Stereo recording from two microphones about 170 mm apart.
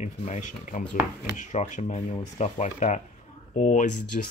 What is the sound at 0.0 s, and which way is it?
Speech, 45° left (ahead or behind).